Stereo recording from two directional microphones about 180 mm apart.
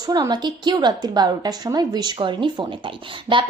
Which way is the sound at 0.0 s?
20° right (ahead or behind).